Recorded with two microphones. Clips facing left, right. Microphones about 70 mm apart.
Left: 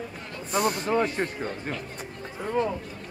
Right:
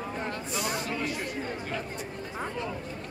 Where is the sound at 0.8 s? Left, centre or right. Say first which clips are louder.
Left 7 dB; left.